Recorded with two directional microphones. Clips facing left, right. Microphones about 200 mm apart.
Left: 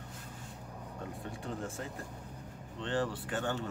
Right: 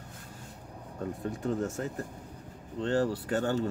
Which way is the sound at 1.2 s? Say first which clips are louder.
Right 10 dB; 40° right (ahead or behind).